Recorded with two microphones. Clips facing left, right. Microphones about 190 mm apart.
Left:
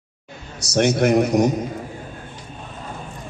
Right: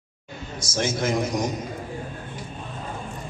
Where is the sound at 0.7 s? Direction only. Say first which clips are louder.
Left 8 dB; 65° left (ahead or behind).